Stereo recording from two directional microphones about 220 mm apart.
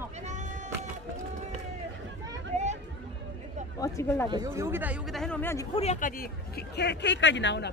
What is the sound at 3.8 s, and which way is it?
Speech, 15° left (ahead or behind).